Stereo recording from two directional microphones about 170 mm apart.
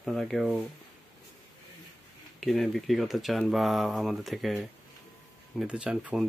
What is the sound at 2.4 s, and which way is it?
Speech, centre (ahead or behind).